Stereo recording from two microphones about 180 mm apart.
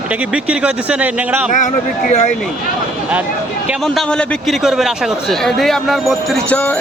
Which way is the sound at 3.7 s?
Centre (ahead or behind).